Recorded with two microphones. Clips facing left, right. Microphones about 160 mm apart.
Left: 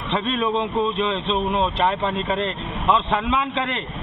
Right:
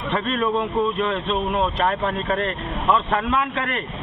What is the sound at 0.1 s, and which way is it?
Speech, centre (ahead or behind).